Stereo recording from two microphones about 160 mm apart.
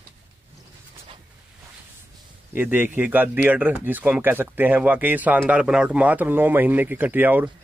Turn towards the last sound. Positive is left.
turn(degrees=-10)  # may be behind; listen again after turning